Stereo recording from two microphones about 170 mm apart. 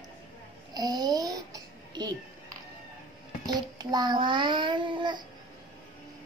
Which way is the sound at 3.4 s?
25° right (ahead or behind).